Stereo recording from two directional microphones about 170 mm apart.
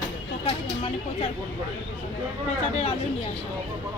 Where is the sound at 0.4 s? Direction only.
35° left (ahead or behind).